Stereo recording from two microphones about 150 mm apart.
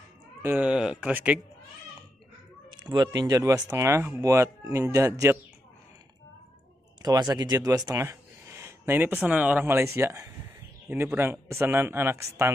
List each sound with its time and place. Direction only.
0.4 s speech: 10° right (ahead or behind)
2.7 s speech: 30° right (ahead or behind)
7.0 s speech: 25° right (ahead or behind)